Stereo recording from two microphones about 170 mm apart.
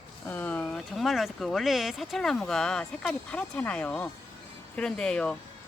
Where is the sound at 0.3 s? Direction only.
10° left (ahead or behind).